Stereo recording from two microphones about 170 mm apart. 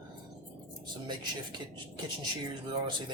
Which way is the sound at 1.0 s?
25° right (ahead or behind).